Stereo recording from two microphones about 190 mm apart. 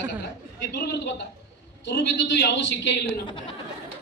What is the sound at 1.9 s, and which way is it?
Speech, 70° left (ahead or behind).